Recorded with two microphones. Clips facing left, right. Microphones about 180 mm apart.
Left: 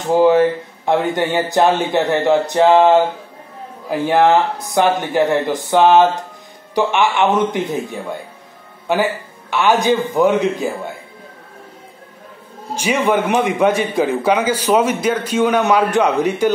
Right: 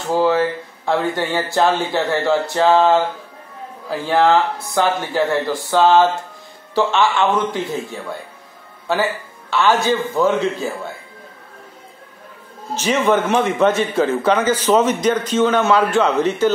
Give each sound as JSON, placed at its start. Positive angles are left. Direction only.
{"t": 0.0, "sound": "a man's voice", "side_deg": 20}
{"t": 12.7, "sound": "a man's voice", "side_deg": 10}